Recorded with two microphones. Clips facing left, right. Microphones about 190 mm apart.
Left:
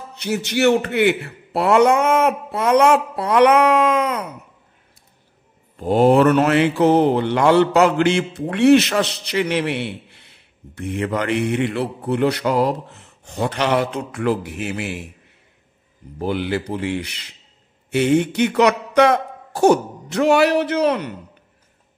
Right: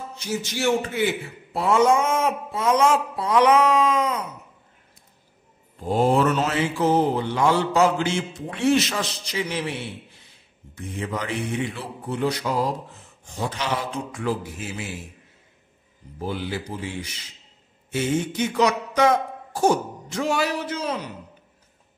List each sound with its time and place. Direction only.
0.1 s a man's voice: 65° left (ahead or behind)
5.8 s mantra: 70° left (ahead or behind)
16.2 s mantra: 65° left (ahead or behind)